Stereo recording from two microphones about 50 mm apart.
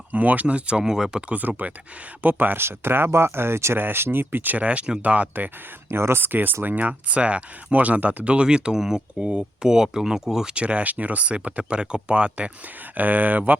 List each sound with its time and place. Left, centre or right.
0.1 s speech: right; by 1.2 s centre
1.3 s speech: right
3.1 s speech: right
3.8 s speech: right
4.6 s speech: right
5.9 s speech: right
6.2 s speech: right
6.7 s speech: right; by 10.5 s centre
10.5 s speech: right
13.0 s speech: right